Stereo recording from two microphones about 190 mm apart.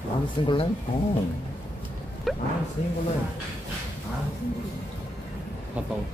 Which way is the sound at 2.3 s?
Centre (ahead or behind).